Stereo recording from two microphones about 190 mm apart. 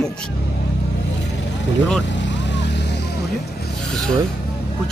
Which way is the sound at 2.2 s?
70° left (ahead or behind).